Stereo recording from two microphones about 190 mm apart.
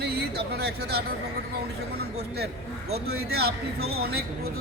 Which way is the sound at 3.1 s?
55° right (ahead or behind).